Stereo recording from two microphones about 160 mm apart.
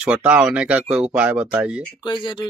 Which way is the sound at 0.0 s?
5° right (ahead or behind).